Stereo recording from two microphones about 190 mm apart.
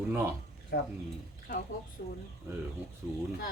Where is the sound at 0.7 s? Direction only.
55° left (ahead or behind).